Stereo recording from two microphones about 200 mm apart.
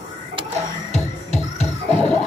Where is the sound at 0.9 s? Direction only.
35° left (ahead or behind).